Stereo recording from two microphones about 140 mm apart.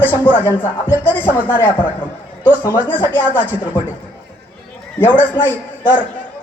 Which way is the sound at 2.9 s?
15° left (ahead or behind).